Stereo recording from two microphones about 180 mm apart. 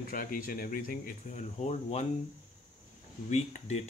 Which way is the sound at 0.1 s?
50° left (ahead or behind).